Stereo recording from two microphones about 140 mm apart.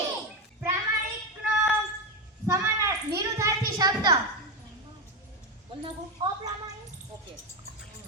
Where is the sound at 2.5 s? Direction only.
20° right (ahead or behind).